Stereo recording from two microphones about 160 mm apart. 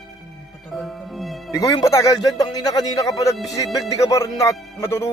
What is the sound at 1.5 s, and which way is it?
A man's voice, 20° left (ahead or behind).